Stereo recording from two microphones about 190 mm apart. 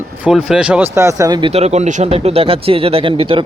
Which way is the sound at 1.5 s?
35° right (ahead or behind).